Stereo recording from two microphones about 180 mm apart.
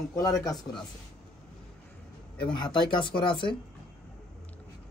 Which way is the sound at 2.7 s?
25° left (ahead or behind).